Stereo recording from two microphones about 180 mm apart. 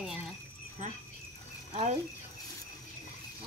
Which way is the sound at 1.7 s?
35° right (ahead or behind).